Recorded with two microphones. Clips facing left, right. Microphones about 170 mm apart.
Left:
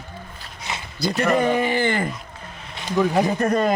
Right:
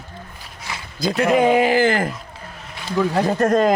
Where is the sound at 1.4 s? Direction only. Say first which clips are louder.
Right 5 dB; 90° right.